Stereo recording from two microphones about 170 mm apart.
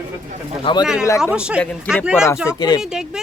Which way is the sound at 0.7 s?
30° left (ahead or behind).